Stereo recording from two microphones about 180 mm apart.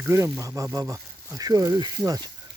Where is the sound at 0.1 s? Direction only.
15° right (ahead or behind).